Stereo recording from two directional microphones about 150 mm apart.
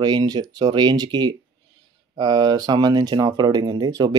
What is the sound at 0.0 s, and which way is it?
Speech, 25° right (ahead or behind).